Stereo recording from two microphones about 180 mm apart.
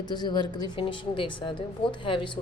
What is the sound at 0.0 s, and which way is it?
A woman's voice, 25° left (ahead or behind).